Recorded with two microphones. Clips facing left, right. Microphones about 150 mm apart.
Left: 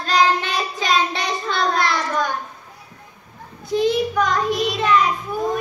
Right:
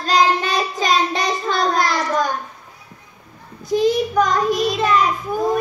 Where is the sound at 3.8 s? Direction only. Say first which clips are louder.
Right 2 dB; 40° right (ahead or behind).